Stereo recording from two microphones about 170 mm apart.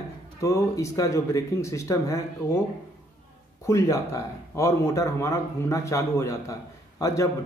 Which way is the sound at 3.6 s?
15° left (ahead or behind).